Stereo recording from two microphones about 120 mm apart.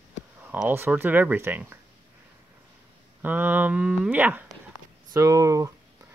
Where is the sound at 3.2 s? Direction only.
15° right (ahead or behind).